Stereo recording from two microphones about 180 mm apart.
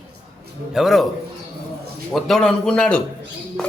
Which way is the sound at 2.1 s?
Centre (ahead or behind).